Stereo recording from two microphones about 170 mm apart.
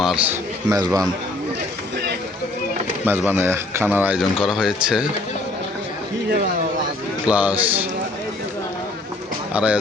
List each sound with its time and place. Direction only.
0.0 s a man's voice: 5° right (ahead or behind)
0.7 s a man's voice: 20° right (ahead or behind)
3.2 s speech: 15° right (ahead or behind)
7.3 s speech: 5° right (ahead or behind)
9.5 s speech: 5° right (ahead or behind)